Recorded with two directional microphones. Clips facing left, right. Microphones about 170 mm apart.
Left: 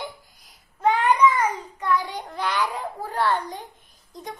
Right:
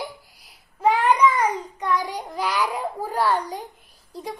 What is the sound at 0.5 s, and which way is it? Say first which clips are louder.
Child singing: right 1 dB; 10° right (ahead or behind).